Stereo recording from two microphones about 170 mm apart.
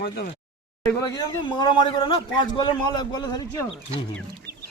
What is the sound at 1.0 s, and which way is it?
A man's voice, 20° left (ahead or behind).